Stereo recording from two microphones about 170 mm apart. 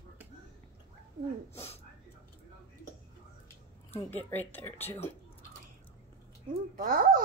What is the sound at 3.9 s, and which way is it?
Speech, 10° left (ahead or behind).